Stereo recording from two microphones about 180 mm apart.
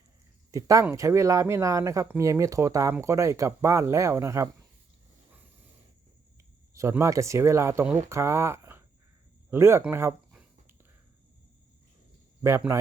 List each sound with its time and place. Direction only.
0.5 s speech: 15° right (ahead or behind)
6.7 s speech: 15° right (ahead or behind)
12.4 s a man's voice: 15° right (ahead or behind)